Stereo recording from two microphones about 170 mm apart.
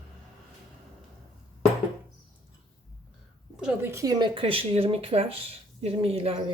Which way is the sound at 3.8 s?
20° right (ahead or behind).